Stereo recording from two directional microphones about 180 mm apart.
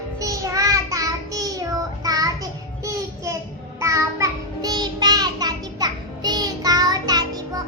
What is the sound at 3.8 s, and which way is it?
Child singing, 15° right (ahead or behind).